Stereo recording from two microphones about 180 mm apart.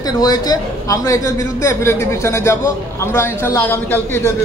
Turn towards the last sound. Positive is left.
turn(degrees=10)  # may be behind; listen again after turning